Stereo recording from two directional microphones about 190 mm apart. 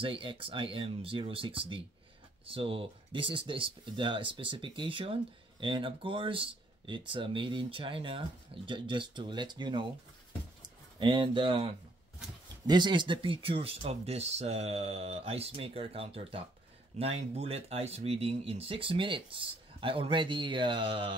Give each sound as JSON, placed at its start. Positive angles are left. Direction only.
{"t": 0.0, "sound": "speech", "side_deg": -25}
{"t": 11.0, "sound": "speech", "side_deg": -25}